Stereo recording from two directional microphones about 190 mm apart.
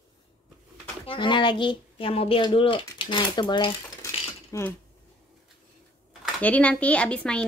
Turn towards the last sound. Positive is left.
turn(degrees=5)  # may be behind; listen again after turning